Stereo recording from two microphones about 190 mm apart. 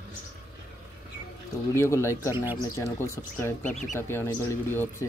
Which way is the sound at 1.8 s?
15° left (ahead or behind).